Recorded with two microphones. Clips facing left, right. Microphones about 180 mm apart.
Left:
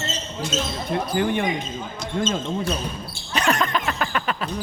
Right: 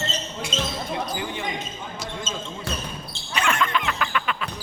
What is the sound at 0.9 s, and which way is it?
Speech, 55° left (ahead or behind).